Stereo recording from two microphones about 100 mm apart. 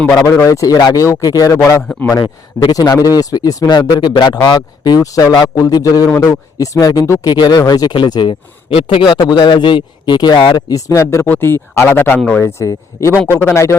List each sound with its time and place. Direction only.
0.1 s speech: 35° left (ahead or behind)
2.6 s speech: 45° left (ahead or behind)
7.3 s speech: 45° left (ahead or behind); by 9.1 s 60° left (ahead or behind)
9.1 s speech: 45° left (ahead or behind)
10.8 s speech: 30° left (ahead or behind)